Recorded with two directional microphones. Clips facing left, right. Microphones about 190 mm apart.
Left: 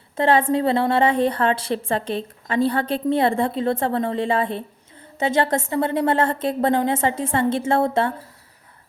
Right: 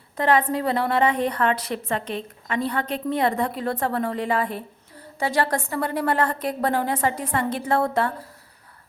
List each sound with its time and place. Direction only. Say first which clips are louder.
0.2 s a woman's voice: left 3 dB; 30° left (ahead or behind)